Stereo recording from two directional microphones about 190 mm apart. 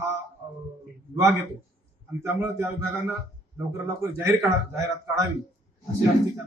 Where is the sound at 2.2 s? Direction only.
10° right (ahead or behind).